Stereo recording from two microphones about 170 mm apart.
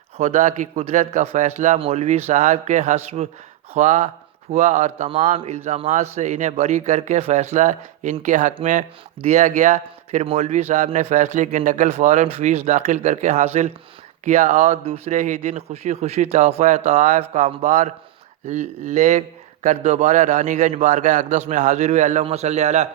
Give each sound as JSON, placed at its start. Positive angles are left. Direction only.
{"t": 0.2, "sound": "a man's voice", "side_deg": -45}